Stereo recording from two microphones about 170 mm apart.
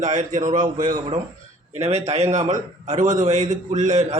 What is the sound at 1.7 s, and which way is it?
A man's voice, 40° right (ahead or behind).